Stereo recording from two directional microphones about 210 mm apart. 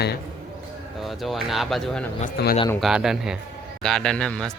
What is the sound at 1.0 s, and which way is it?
Hammer, centre (ahead or behind).